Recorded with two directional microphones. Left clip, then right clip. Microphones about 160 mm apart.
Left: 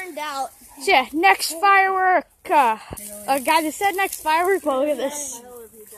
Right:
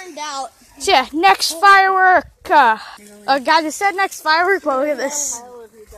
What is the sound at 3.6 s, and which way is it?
Speech, centre (ahead or behind).